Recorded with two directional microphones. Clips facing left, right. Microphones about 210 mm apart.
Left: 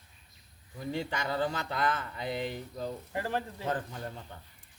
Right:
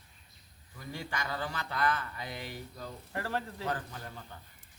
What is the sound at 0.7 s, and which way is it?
Speech, 20° left (ahead or behind).